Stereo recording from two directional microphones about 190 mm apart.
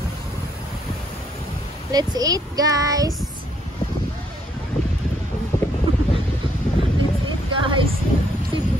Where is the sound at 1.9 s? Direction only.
20° right (ahead or behind).